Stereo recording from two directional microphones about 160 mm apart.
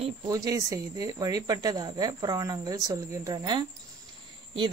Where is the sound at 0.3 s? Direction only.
20° right (ahead or behind).